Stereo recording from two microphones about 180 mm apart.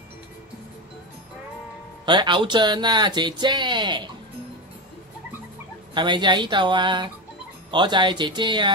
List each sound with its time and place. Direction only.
2.0 s speech: 25° right (ahead or behind)
5.9 s speech: 25° right (ahead or behind)